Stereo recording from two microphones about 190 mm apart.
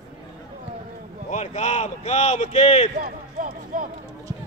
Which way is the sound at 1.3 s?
40° left (ahead or behind).